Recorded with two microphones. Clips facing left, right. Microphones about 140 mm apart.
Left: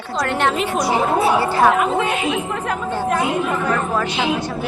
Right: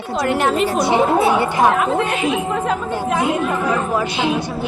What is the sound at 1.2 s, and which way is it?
Speech, 20° right (ahead or behind).